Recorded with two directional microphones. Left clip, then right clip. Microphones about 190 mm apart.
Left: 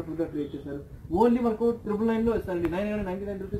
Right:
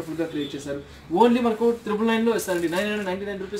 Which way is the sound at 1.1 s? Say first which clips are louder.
Right 4 dB; 25° right (ahead or behind).